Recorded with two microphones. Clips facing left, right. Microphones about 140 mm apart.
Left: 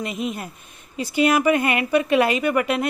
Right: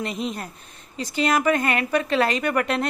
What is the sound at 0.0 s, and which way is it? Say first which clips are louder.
Speech: left 1 dB; 5° left (ahead or behind).